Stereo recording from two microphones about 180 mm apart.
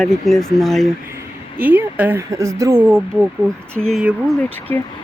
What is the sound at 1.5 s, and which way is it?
Speech, 10° right (ahead or behind).